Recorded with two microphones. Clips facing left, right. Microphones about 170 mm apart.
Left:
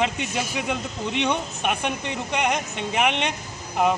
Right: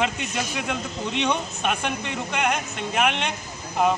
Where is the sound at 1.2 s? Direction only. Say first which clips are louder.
Even; 15° left (ahead or behind).